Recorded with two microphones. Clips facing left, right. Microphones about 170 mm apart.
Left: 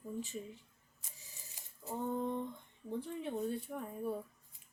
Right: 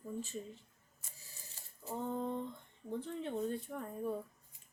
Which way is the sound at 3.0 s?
10° left (ahead or behind).